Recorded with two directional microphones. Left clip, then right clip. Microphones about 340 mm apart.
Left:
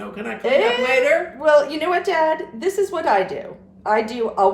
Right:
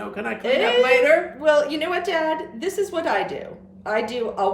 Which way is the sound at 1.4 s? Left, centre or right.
Centre.